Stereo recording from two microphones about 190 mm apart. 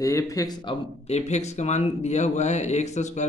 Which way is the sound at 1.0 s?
35° left (ahead or behind).